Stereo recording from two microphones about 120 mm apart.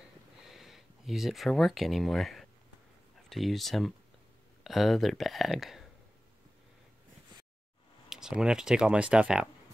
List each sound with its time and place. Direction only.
0.5 s speech: centre (ahead or behind)
8.1 s speech: 5° right (ahead or behind)